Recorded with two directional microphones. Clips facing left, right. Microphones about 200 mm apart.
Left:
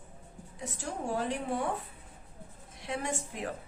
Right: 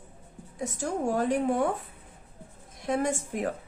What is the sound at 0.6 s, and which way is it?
A woman's voice, 45° right (ahead or behind).